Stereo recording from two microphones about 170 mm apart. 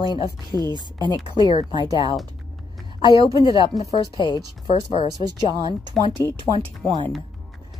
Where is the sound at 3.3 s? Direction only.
30° left (ahead or behind).